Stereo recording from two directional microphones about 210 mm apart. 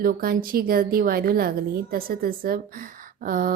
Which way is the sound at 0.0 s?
45° right (ahead or behind).